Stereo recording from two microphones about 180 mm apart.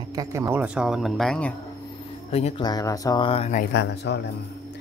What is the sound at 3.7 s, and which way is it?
Speech, 75° left (ahead or behind).